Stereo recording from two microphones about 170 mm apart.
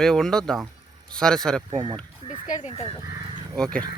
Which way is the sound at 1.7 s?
30° right (ahead or behind).